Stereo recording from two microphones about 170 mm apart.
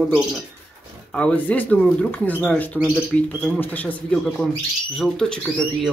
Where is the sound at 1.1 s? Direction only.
10° left (ahead or behind).